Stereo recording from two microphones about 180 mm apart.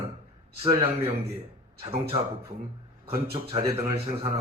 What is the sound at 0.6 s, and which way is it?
A man's voice, 30° right (ahead or behind).